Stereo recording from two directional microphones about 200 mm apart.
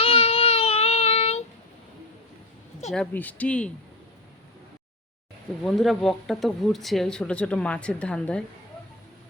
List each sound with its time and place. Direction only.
0.0 s child singing: 30° left (ahead or behind)
2.9 s speech: 5° left (ahead or behind)
5.6 s speech: centre (ahead or behind)